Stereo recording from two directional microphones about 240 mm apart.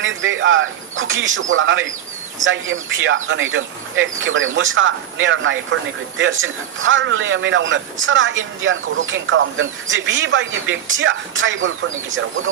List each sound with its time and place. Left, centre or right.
0.0 s a man's voice: right